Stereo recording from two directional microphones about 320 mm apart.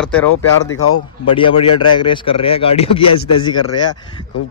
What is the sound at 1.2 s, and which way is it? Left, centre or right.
Speech, centre.